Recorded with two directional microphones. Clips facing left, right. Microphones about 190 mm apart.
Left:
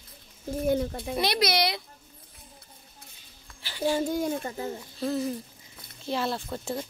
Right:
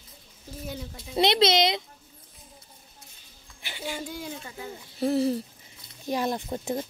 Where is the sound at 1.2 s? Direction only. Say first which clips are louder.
Right 5 dB; 25° right (ahead or behind).